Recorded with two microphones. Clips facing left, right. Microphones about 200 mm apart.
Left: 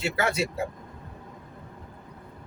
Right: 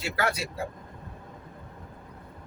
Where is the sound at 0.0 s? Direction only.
25° left (ahead or behind).